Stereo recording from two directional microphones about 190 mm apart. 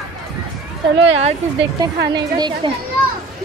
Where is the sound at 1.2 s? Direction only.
30° right (ahead or behind).